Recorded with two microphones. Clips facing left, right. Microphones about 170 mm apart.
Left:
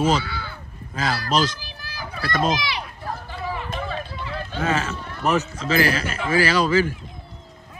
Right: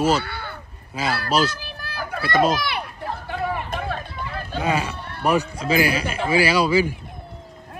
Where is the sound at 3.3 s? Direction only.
55° right (ahead or behind).